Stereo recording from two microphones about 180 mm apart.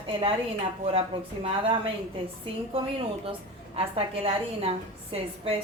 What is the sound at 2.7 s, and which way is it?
A woman's voice, 30° right (ahead or behind).